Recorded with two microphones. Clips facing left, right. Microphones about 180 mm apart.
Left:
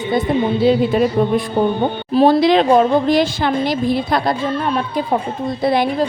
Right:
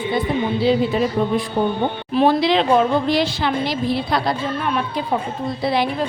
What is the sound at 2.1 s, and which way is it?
A woman's voice, 40° left (ahead or behind).